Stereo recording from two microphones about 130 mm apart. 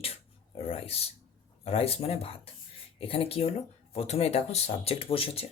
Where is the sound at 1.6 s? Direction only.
50° left (ahead or behind).